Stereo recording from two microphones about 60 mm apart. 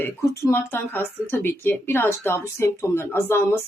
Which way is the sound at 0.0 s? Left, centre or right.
Left.